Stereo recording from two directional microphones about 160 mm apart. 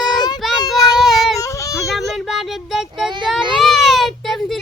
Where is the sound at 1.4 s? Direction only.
20° left (ahead or behind).